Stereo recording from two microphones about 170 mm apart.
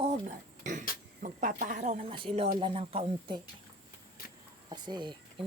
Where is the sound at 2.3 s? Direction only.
35° right (ahead or behind).